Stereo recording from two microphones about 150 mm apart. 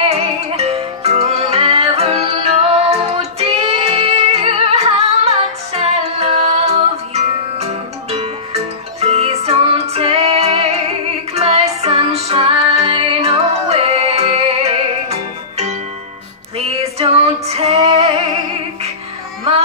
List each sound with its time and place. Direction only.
0.1 s music: 45° right (ahead or behind)
16.5 s female singing: 45° right (ahead or behind)